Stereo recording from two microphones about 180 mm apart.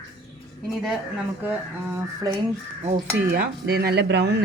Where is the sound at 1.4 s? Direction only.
10° right (ahead or behind).